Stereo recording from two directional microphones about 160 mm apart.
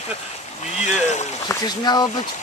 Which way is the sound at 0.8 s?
45° left (ahead or behind).